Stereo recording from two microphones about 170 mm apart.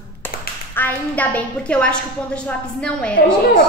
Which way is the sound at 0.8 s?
10° left (ahead or behind).